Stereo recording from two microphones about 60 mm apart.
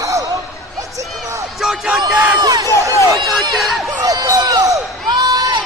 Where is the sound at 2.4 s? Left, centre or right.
Right.